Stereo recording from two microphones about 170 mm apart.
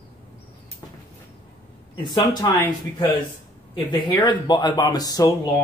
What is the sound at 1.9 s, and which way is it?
Speech, 25° left (ahead or behind).